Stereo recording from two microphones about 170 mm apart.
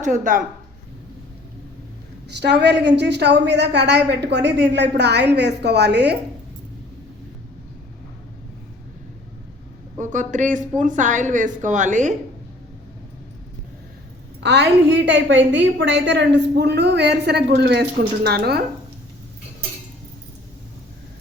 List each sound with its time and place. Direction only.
0.0 s a woman's voice: 50° right (ahead or behind)
2.4 s a woman's voice: 85° right
10.0 s a woman's voice: 50° right (ahead or behind)
14.4 s a woman's voice: 90° right; by 18.6 s 70° right (ahead or behind)